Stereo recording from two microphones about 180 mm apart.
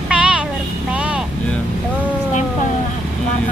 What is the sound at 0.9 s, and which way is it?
Vehicle, 5° right (ahead or behind).